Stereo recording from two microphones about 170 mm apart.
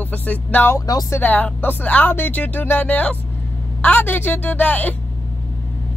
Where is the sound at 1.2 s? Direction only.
10° left (ahead or behind).